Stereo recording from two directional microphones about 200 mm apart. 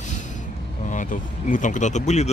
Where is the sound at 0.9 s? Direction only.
40° left (ahead or behind).